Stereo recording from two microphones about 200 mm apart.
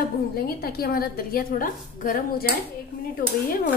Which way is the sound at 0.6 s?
50° left (ahead or behind).